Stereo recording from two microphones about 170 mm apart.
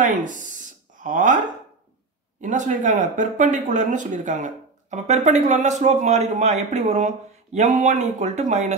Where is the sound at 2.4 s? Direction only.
45° right (ahead or behind).